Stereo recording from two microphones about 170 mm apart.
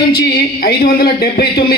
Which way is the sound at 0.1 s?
65° left (ahead or behind).